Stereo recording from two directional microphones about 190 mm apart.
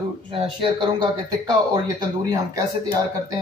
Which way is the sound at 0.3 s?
25° right (ahead or behind).